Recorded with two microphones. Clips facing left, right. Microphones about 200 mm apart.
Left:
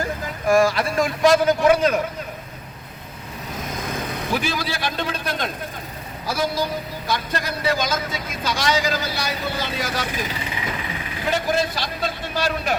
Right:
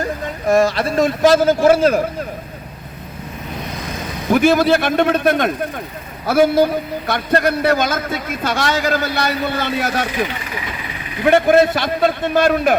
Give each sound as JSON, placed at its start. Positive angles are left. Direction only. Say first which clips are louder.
{"t": 0.4, "sound": "a man's voice", "louder": "right 3 dB", "side_deg": -20}
{"t": 1.6, "sound": "a man's voice", "louder": "right 5 dB", "side_deg": -45}
{"t": 4.3, "sound": "a man's voice", "louder": "right 14 dB", "side_deg": -55}